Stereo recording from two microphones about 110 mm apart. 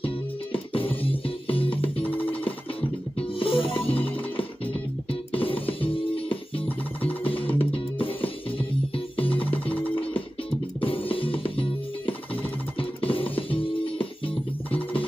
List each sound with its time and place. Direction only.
0.0 s music: 55° left (ahead or behind)
2.0 s music: 15° left (ahead or behind)
3.2 s music: 55° left (ahead or behind)
5.3 s music: 55° left (ahead or behind)
10.8 s music: 55° left (ahead or behind)